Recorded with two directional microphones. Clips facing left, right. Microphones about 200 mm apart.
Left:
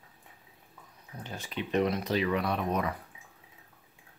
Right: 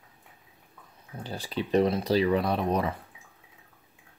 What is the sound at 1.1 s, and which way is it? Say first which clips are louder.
Speech: right 5 dB; 35° right (ahead or behind).